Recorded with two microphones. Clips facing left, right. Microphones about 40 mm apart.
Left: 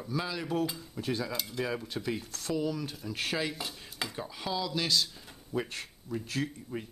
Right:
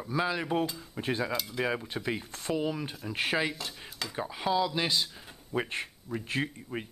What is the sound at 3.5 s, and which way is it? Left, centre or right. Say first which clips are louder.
Dishes: even; centre.